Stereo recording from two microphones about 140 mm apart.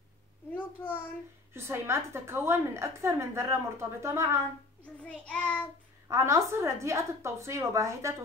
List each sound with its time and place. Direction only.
0.5 s a sound: 15° left (ahead or behind)
1.5 s a woman's voice: 20° right (ahead or behind)
5.0 s child singing: 10° left (ahead or behind)
6.0 s a woman's voice: 20° right (ahead or behind)